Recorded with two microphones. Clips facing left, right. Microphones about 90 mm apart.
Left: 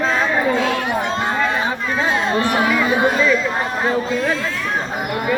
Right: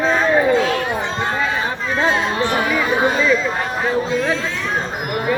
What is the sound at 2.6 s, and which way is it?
Speech, centre (ahead or behind).